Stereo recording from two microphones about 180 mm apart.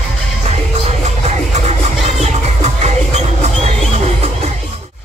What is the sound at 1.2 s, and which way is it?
Music, 40° right (ahead or behind).